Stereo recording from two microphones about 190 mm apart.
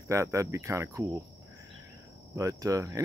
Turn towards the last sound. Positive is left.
turn(degrees=-15)  # may be behind; listen again after turning